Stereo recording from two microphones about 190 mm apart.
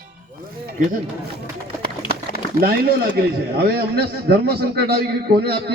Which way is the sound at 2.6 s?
55° right (ahead or behind).